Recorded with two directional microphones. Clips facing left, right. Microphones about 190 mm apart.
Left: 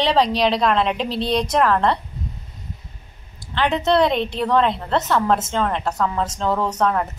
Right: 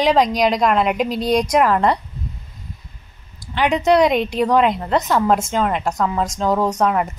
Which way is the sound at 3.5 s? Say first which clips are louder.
Right 3 dB; 15° right (ahead or behind).